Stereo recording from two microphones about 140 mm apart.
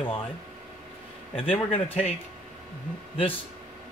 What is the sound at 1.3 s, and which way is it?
Speech, 40° left (ahead or behind).